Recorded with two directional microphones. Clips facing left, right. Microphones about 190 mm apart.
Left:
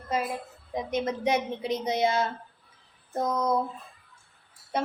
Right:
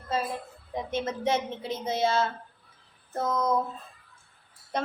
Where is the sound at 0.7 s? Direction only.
15° left (ahead or behind).